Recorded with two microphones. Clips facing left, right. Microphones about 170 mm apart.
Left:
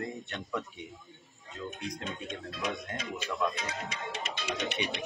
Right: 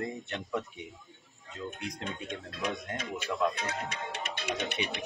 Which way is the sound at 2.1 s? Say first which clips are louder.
Even; 60° right (ahead or behind).